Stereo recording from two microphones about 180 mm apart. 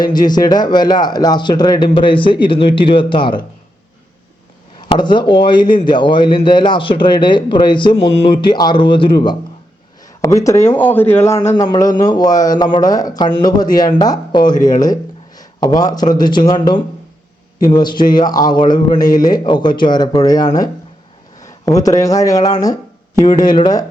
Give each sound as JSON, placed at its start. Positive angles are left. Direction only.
{"t": 0.0, "sound": "a man's voice", "side_deg": 25}
{"t": 4.9, "sound": "a man's voice", "side_deg": 25}